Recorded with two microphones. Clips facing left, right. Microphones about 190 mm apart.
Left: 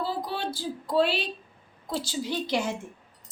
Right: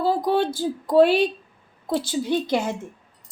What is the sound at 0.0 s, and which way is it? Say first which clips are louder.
A woman's voice: right 10 dB; 50° right (ahead or behind).